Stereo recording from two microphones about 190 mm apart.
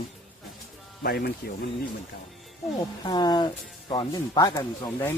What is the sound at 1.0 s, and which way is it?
Speech, 55° left (ahead or behind).